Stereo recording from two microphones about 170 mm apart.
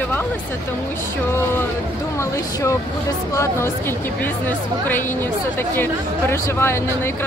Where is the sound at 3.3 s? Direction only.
15° left (ahead or behind).